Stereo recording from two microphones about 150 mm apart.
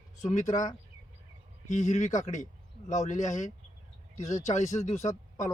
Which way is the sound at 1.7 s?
55° left (ahead or behind).